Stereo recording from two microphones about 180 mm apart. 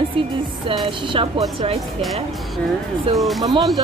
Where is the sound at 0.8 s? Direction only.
30° right (ahead or behind).